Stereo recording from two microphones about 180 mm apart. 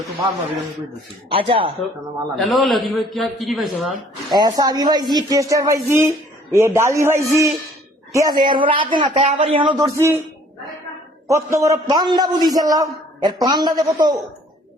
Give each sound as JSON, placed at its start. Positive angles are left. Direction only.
{"t": 1.3, "sound": "a man's voice", "side_deg": -30}
{"t": 2.3, "sound": "a man's voice", "side_deg": 0}
{"t": 4.4, "sound": "a man's voice", "side_deg": -20}
{"t": 9.2, "sound": "a man's voice", "side_deg": -40}
{"t": 9.6, "sound": "a man's voice", "side_deg": -20}
{"t": 11.3, "sound": "a man's voice", "side_deg": -15}